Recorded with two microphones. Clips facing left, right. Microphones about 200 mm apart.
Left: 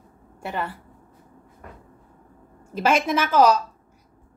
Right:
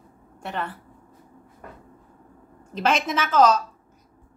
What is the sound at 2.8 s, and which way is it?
Speech, 10° left (ahead or behind).